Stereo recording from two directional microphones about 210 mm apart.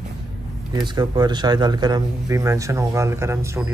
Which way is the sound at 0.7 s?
20° right (ahead or behind).